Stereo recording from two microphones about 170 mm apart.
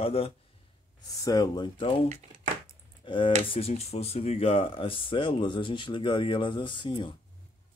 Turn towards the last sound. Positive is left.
turn(degrees=30)  # may be behind; listen again after turning